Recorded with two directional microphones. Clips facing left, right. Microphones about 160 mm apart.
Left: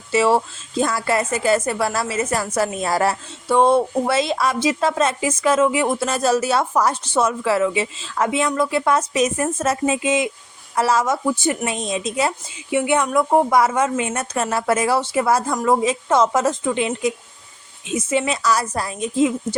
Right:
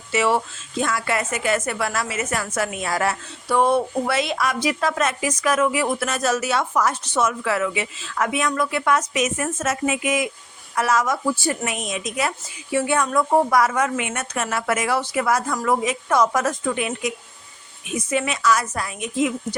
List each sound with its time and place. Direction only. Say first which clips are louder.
0.1 s a woman's voice: left 3 dB; 30° left (ahead or behind)